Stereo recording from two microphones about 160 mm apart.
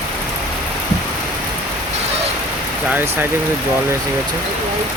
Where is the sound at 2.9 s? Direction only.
15° right (ahead or behind).